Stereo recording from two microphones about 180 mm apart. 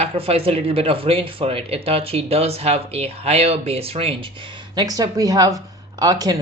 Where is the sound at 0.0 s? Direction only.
35° right (ahead or behind).